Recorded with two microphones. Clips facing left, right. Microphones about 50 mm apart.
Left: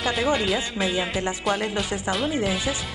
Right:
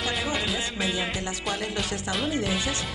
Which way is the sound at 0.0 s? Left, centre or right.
Centre.